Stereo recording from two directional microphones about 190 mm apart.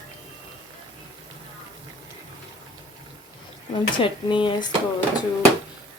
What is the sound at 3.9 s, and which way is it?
Speech, 25° left (ahead or behind).